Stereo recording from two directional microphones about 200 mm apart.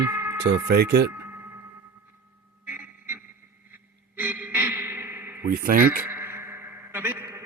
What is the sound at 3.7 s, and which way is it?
Music, 10° right (ahead or behind).